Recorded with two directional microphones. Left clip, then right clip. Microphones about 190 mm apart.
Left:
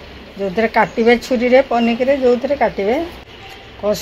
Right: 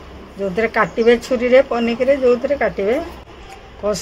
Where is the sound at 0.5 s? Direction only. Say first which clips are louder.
Left 2 dB; 25° left (ahead or behind).